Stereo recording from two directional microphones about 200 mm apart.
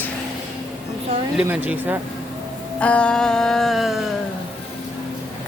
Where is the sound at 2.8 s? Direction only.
5° left (ahead or behind).